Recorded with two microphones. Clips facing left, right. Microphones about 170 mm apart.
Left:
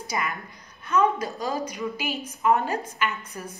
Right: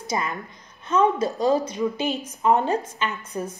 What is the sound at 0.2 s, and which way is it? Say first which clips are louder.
A woman's voice: right 1 dB; 25° right (ahead or behind).